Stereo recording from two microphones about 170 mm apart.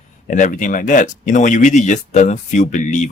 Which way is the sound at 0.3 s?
50° left (ahead or behind).